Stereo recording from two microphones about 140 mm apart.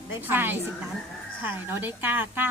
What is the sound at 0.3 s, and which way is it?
A woman's voice, 15° right (ahead or behind).